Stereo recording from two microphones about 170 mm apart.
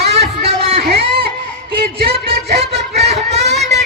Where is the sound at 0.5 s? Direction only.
35° right (ahead or behind).